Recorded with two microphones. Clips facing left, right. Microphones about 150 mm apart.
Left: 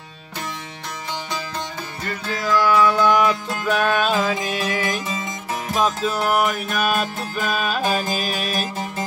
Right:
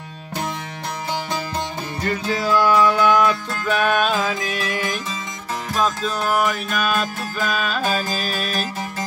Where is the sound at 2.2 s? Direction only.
15° right (ahead or behind).